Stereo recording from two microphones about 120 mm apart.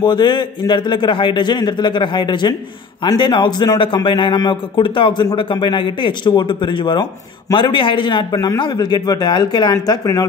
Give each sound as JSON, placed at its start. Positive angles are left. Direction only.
{"t": 0.0, "sound": "a man's voice", "side_deg": 40}